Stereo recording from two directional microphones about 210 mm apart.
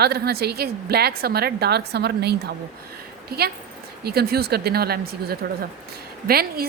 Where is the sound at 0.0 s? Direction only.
50° right (ahead or behind).